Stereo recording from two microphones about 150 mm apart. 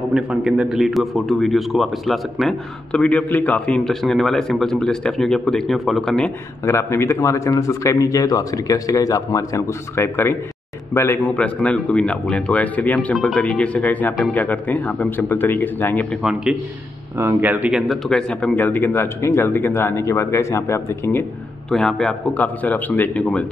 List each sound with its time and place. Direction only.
0.1 s a man's voice: centre (ahead or behind)
6.6 s speech: 20° left (ahead or behind)
16.2 s a man's voice: 5° right (ahead or behind)
17.2 s speech: 15° right (ahead or behind); by 21.7 s 15° left (ahead or behind)
21.7 s speech: 5° left (ahead or behind)